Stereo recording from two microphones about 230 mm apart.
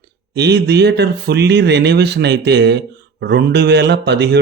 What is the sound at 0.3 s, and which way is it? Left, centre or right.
Speech, right.